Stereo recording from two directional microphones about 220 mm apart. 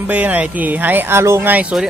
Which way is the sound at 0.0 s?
5° right (ahead or behind).